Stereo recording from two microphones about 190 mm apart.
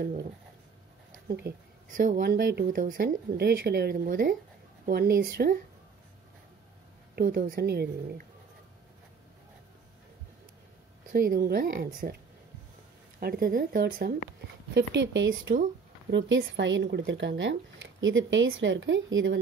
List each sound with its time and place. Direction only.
0.0 s speech: 55° right (ahead or behind)
2.0 s speech: 45° right (ahead or behind)
7.2 s a woman's voice: 50° right (ahead or behind)
11.1 s speech: 50° right (ahead or behind)
13.2 s speech: 50° right (ahead or behind)
14.7 s speech: 65° right (ahead or behind); by 19.3 s 85° right